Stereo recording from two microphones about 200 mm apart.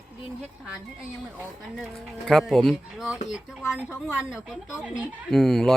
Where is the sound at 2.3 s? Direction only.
Centre (ahead or behind).